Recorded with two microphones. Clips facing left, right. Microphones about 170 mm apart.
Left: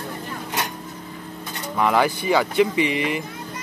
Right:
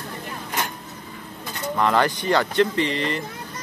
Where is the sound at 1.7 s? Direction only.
10° left (ahead or behind).